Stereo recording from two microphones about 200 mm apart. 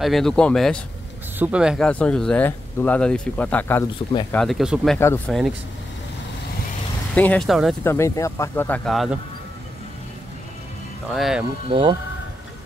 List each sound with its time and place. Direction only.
0.0 s speech: centre (ahead or behind)
7.2 s speech: 5° left (ahead or behind)
7.8 s speech: 15° left (ahead or behind)
11.1 s speech: centre (ahead or behind)
11.7 s speech: 25° right (ahead or behind)